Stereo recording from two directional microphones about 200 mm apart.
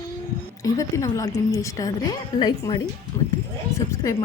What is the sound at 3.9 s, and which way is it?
Speech, 15° left (ahead or behind).